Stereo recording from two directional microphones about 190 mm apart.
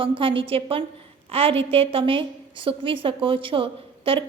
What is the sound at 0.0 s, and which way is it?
A woman's voice, 30° right (ahead or behind).